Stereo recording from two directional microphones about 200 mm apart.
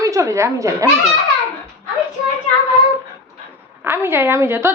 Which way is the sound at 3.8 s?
10° right (ahead or behind).